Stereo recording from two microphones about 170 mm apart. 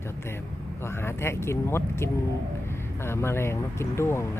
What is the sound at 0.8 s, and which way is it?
Speech, 15° left (ahead or behind).